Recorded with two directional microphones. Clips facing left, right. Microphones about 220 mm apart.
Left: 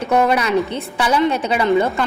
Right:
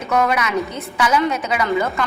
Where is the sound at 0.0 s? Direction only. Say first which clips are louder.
Left 3 dB; 30° left (ahead or behind).